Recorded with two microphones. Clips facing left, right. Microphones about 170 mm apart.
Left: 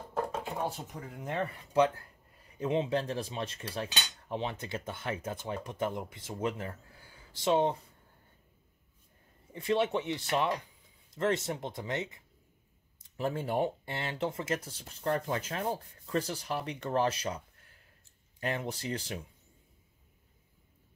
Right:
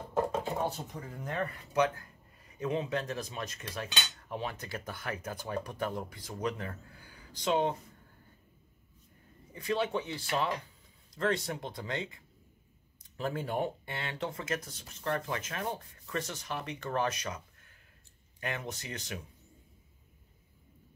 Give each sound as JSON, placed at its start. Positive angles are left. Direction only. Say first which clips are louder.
{"t": 0.6, "sound": "cutlery", "louder": "right 1 dB", "side_deg": 15}
{"t": 9.5, "sound": "cutlery", "louder": "left 3 dB", "side_deg": 25}
{"t": 18.4, "sound": "speech", "louder": "left 4 dB", "side_deg": 30}